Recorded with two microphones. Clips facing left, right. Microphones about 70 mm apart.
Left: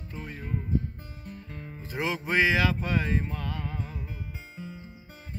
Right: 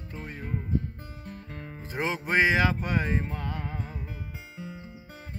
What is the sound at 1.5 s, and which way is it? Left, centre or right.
Music, right.